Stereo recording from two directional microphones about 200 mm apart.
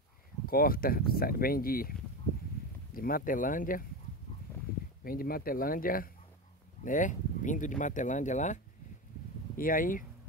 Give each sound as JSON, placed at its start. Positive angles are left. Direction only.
{"t": 0.5, "sound": "speech", "side_deg": 45}
{"t": 5.0, "sound": "speech", "side_deg": 45}
{"t": 9.6, "sound": "speech", "side_deg": 45}